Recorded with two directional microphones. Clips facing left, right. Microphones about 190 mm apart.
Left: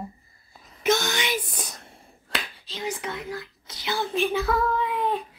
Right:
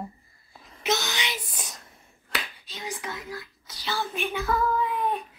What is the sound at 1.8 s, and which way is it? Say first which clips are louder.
Finger snapping: left 5 dB; 30° left (ahead or behind).